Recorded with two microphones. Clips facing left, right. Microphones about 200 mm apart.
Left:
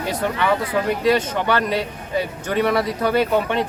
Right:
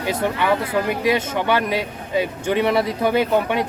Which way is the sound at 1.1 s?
10° right (ahead or behind).